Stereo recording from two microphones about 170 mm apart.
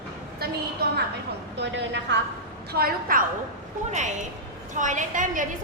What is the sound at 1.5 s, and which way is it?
Speech, 90° right.